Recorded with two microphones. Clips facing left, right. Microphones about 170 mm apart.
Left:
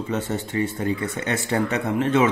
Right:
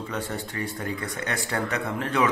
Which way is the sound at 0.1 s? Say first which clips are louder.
Left 8 dB; 25° left (ahead or behind).